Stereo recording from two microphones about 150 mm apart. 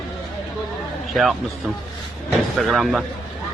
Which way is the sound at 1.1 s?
Centre (ahead or behind).